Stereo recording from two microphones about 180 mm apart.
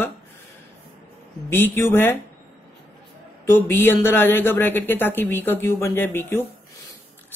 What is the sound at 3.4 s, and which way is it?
Speech, 15° left (ahead or behind).